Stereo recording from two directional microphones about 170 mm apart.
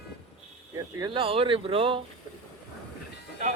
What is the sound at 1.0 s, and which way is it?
Speech, 30° right (ahead or behind).